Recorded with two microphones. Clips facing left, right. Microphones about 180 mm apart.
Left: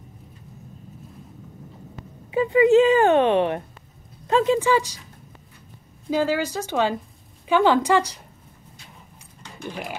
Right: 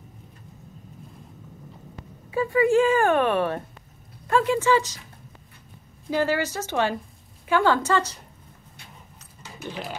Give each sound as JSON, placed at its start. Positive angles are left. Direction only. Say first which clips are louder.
{"t": 2.3, "sound": "a woman's voice", "louder": "left 4 dB", "side_deg": 20}
{"t": 6.0, "sound": "a woman's voice", "louder": "left 2 dB", "side_deg": 15}
{"t": 9.6, "sound": "pig", "louder": "left 1 dB", "side_deg": 15}